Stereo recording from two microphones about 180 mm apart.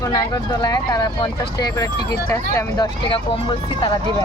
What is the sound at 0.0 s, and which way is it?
Speech, 20° left (ahead or behind).